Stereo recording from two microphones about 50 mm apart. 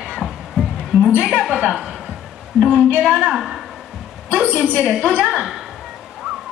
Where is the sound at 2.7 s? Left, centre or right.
Right.